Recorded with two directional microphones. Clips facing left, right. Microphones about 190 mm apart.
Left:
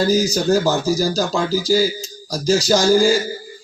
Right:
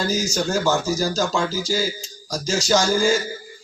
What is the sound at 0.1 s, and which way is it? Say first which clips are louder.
A man's voice: left 6 dB; 35° left (ahead or behind).